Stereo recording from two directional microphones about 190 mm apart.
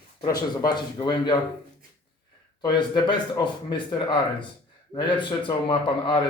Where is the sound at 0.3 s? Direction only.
20° left (ahead or behind).